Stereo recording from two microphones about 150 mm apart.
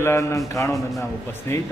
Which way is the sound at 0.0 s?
20° left (ahead or behind).